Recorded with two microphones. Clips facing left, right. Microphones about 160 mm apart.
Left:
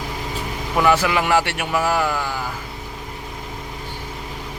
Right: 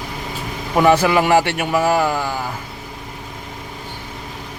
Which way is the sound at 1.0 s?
35° right (ahead or behind).